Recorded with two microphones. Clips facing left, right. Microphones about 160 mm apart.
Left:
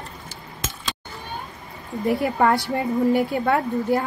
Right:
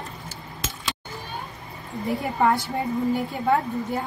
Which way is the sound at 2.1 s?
70° left (ahead or behind).